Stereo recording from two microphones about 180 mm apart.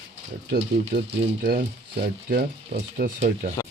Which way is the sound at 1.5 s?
60° right (ahead or behind).